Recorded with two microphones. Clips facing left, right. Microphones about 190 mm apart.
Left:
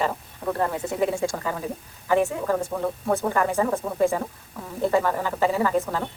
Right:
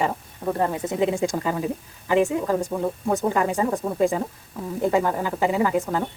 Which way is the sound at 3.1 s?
15° right (ahead or behind).